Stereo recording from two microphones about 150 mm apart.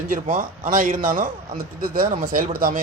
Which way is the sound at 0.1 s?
65° right (ahead or behind).